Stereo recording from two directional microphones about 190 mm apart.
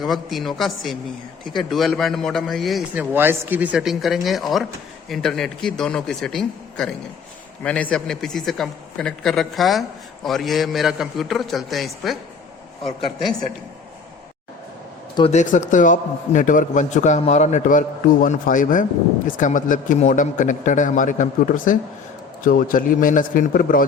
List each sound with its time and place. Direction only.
0.0 s a man's voice: centre (ahead or behind)
15.3 s a man's voice: 40° left (ahead or behind)